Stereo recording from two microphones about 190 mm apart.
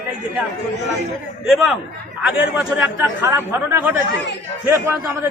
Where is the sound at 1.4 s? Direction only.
Centre (ahead or behind).